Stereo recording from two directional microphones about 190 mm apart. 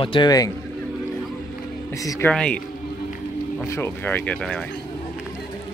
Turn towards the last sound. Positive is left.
turn(degrees=5)  # may be behind; listen again after turning